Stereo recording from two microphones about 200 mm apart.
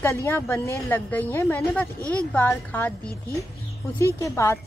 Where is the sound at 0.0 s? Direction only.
10° left (ahead or behind).